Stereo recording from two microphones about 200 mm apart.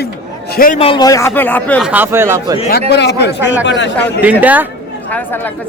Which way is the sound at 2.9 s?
55° left (ahead or behind).